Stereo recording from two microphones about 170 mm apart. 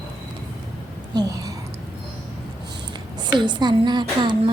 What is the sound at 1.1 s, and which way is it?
Speech, 20° right (ahead or behind).